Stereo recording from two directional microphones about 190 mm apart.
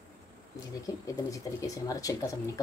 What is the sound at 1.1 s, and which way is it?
Speech, 15° left (ahead or behind).